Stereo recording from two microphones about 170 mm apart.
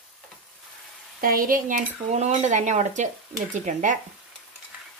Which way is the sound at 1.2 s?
55° right (ahead or behind).